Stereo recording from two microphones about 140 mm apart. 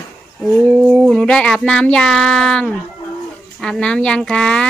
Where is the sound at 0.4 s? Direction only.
Centre (ahead or behind).